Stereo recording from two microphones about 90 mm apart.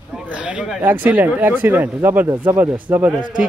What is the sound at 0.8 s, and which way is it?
A man's voice, 20° right (ahead or behind).